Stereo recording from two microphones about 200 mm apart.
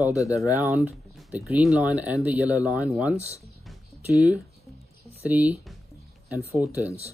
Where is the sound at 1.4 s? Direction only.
5° right (ahead or behind).